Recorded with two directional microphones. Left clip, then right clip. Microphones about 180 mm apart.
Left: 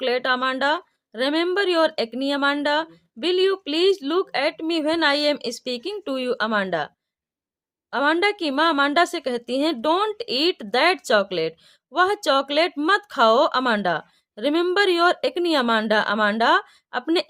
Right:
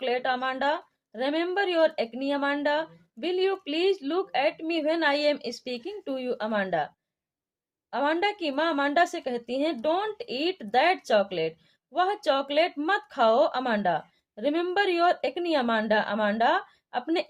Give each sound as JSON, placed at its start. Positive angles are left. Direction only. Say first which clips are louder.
{"t": 0.0, "sound": "speech", "louder": "left 5 dB", "side_deg": 35}